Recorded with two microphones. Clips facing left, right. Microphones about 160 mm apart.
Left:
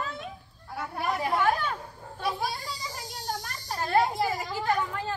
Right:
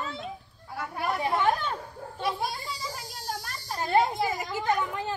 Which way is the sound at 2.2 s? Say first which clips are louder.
Even; centre (ahead or behind).